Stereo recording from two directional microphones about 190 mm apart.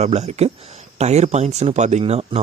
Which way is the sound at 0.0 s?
35° right (ahead or behind).